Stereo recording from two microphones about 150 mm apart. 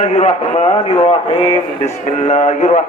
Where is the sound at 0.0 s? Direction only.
50° left (ahead or behind).